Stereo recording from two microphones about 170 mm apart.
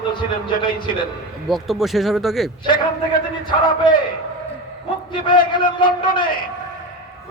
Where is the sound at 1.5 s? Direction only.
Centre (ahead or behind).